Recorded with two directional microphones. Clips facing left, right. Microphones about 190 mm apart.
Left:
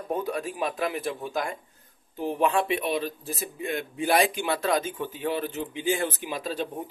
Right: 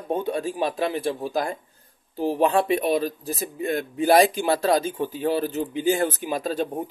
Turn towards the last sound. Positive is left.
turn(degrees=-45)  # may be behind; listen again after turning